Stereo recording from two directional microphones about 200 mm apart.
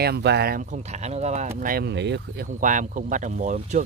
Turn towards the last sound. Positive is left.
turn(degrees=-35)  # may be behind; listen again after turning